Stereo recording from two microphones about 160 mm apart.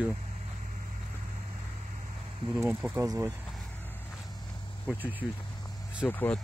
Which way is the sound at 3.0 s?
20° right (ahead or behind).